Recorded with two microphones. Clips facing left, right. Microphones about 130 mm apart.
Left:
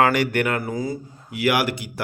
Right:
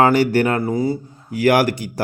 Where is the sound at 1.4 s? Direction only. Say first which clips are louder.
Right 6 dB; 45° right (ahead or behind).